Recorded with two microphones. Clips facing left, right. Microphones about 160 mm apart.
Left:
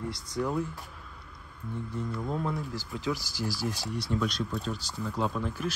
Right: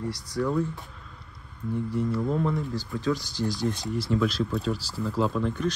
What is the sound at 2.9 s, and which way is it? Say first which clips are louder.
Speech: right 5 dB; 10° left (ahead or behind).